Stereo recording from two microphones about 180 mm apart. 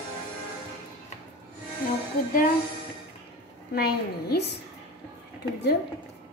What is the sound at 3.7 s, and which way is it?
Speech, 60° left (ahead or behind).